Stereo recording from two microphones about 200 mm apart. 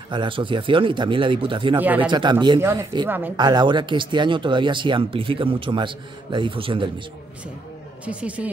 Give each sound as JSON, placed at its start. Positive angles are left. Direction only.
{"t": 0.1, "sound": "speech", "side_deg": -25}
{"t": 3.3, "sound": "speech", "side_deg": -20}
{"t": 8.0, "sound": "speech", "side_deg": -5}